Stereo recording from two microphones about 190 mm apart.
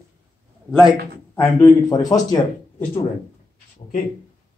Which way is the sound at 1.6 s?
20° left (ahead or behind).